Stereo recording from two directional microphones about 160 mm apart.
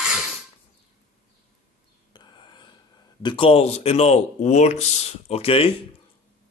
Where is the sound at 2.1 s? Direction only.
30° left (ahead or behind).